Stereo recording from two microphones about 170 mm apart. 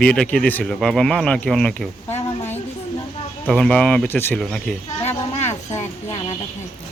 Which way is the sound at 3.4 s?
5° left (ahead or behind).